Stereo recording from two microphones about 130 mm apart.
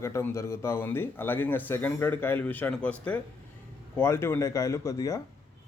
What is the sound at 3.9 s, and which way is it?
Speech, 20° left (ahead or behind).